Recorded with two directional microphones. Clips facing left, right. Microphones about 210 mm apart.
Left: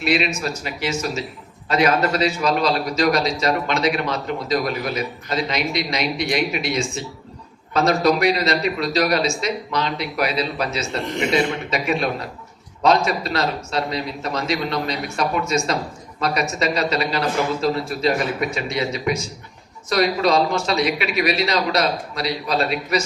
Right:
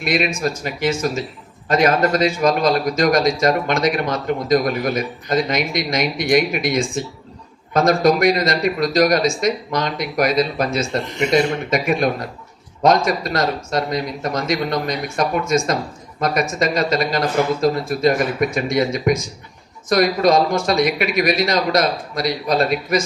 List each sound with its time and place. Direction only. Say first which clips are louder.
0.0 s a man's voice: right 1 dB; 50° right (ahead or behind)